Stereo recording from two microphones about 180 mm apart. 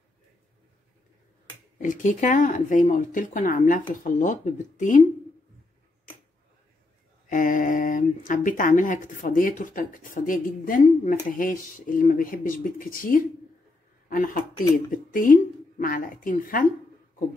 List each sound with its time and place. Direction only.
1.8 s speech: 45° left (ahead or behind)
7.2 s speech: 45° left (ahead or behind)